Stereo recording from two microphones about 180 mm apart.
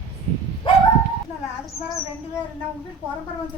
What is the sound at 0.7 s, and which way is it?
Dog, 25° left (ahead or behind).